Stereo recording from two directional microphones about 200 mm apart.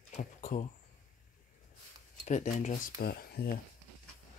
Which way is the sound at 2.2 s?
35° left (ahead or behind).